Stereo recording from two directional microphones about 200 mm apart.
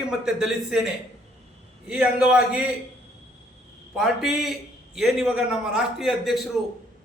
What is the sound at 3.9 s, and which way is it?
A man's voice, centre (ahead or behind).